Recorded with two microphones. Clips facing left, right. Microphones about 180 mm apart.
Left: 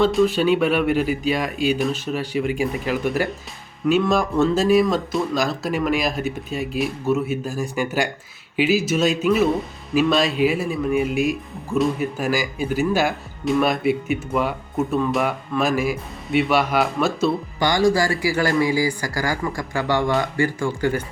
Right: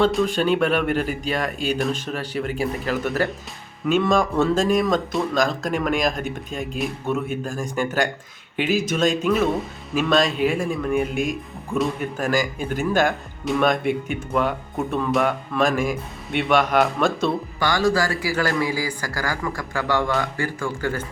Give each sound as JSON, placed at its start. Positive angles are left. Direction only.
{"t": 0.0, "sound": "speech", "side_deg": 5}
{"t": 17.6, "sound": "speech", "side_deg": 15}